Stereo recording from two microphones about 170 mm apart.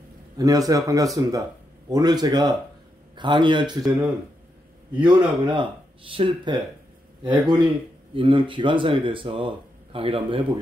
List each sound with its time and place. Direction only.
0.4 s speech: 20° right (ahead or behind)
5.0 s speech: 30° right (ahead or behind)